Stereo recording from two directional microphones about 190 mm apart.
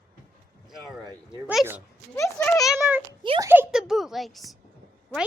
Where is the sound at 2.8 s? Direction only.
10° right (ahead or behind).